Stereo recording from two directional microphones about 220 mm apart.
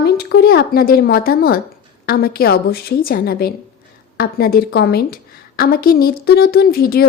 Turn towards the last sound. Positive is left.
turn(degrees=45)  # may be behind; listen again after turning